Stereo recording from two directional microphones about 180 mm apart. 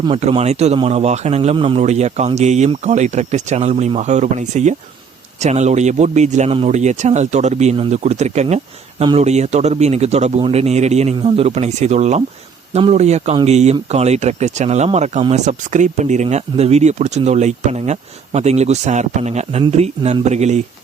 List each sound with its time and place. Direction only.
0.0 s speech: 30° right (ahead or behind)